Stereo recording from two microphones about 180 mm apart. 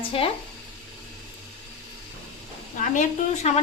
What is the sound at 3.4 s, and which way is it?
Speech, 40° left (ahead or behind).